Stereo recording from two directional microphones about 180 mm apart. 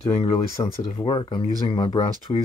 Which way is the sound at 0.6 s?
25° left (ahead or behind).